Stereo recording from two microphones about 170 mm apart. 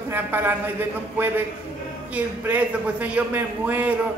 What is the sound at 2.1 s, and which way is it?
A man's voice, 10° right (ahead or behind).